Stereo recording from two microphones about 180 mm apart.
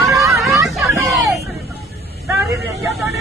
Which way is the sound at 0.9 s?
15° right (ahead or behind).